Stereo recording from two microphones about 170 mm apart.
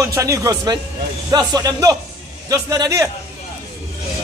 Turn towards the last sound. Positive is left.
turn(degrees=-20)  # may be behind; listen again after turning